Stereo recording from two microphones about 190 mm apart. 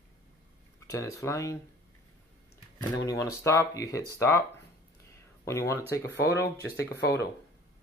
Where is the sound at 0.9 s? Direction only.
15° left (ahead or behind).